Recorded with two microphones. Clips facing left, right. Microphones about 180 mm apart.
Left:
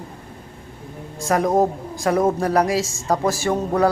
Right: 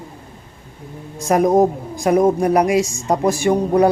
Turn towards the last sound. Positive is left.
turn(degrees=-15)  # may be behind; listen again after turning